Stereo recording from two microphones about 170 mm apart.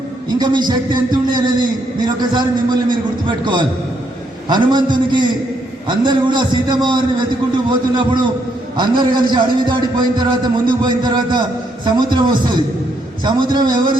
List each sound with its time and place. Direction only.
0.3 s speech: 25° right (ahead or behind)